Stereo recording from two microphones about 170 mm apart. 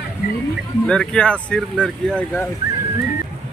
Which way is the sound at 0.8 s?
5° left (ahead or behind).